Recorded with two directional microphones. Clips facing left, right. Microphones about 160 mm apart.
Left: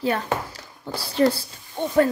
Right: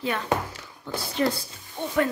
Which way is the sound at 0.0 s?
35° left (ahead or behind).